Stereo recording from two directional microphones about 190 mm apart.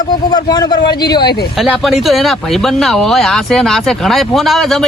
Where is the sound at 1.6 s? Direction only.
Centre (ahead or behind).